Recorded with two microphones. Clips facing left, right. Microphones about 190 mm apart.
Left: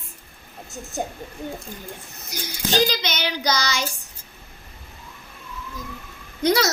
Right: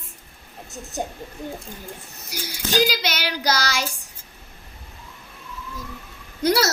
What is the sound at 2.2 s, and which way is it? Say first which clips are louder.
Child singing: left 2 dB; 10° right (ahead or behind).